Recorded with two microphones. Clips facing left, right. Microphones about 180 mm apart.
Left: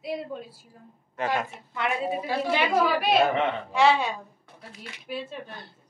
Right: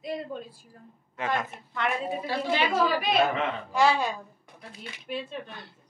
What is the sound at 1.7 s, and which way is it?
Speech, 15° left (ahead or behind).